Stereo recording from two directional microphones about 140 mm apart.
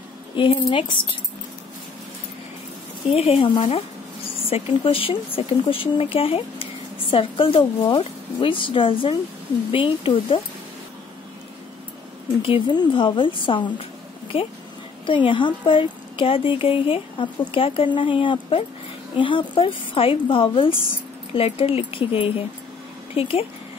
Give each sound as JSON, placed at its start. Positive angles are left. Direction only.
{"t": 0.4, "sound": "speech", "side_deg": 35}
{"t": 3.1, "sound": "speech", "side_deg": 45}
{"t": 12.4, "sound": "speech", "side_deg": 40}